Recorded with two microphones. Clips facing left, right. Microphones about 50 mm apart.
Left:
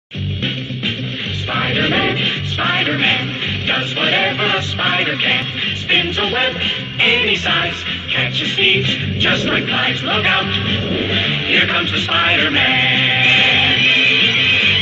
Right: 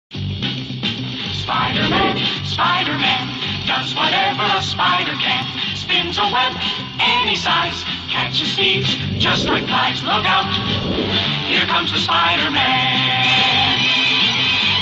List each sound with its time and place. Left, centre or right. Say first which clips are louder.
1.5 s music: even; left